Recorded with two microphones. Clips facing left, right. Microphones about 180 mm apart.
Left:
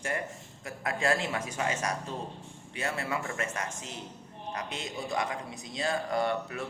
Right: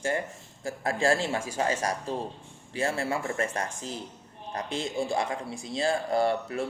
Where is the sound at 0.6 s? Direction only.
30° right (ahead or behind).